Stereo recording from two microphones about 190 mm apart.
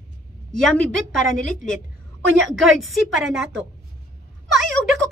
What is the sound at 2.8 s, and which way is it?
Speech, centre (ahead or behind).